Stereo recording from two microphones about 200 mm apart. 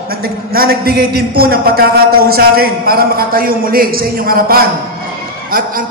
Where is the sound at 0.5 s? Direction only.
50° right (ahead or behind).